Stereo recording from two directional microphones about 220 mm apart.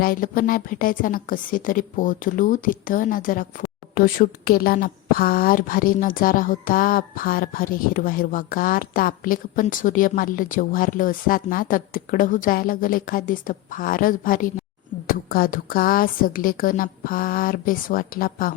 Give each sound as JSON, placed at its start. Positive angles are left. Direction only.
{"t": 0.0, "sound": "a woman's voice", "side_deg": 40}